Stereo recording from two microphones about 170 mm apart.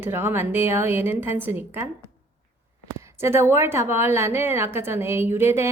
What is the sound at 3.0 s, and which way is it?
A woman's voice, 15° right (ahead or behind).